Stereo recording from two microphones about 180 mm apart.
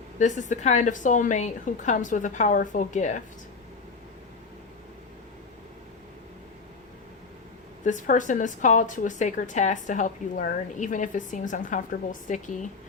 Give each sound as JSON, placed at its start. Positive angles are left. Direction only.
{"t": 0.2, "sound": "speech", "side_deg": 40}
{"t": 7.9, "sound": "speech", "side_deg": 45}